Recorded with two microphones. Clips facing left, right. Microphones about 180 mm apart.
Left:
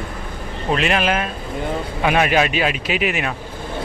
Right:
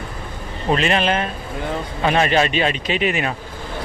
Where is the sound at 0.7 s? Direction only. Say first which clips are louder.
Right 1 dB; centre (ahead or behind).